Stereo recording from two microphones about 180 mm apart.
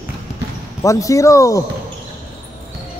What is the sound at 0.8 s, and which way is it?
Speech, 15° left (ahead or behind).